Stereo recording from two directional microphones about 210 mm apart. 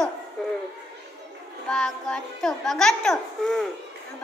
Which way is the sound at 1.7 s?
5° left (ahead or behind).